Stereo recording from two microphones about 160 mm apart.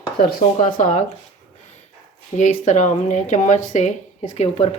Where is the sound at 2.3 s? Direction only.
50° left (ahead or behind).